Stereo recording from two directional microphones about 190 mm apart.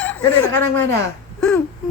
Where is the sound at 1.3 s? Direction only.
5° left (ahead or behind).